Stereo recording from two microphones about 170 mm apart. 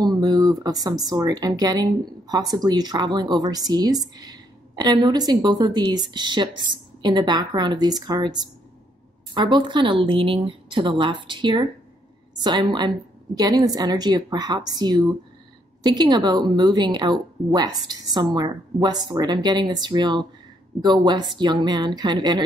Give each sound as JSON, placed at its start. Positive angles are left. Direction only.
{"t": 0.0, "sound": "speech", "side_deg": -25}